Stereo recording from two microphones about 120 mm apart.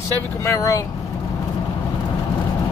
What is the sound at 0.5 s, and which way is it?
Speech, 25° left (ahead or behind).